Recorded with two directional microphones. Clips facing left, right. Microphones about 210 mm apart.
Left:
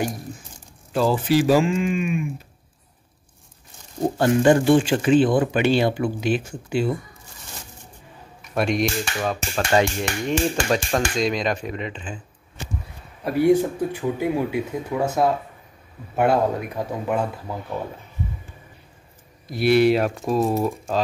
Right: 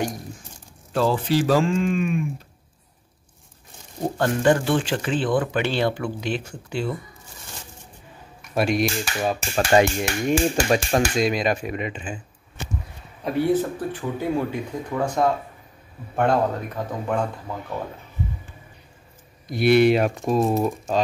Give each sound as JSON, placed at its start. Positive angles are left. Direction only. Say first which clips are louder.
{"t": 0.9, "sound": "speech", "louder": "left 2 dB", "side_deg": 5}
{"t": 4.2, "sound": "speech", "louder": "left 3 dB", "side_deg": 15}
{"t": 8.4, "sound": "speech", "louder": "even", "side_deg": -5}
{"t": 13.2, "sound": "speech", "louder": "left 3 dB", "side_deg": 10}
{"t": 19.5, "sound": "speech", "louder": "even", "side_deg": 0}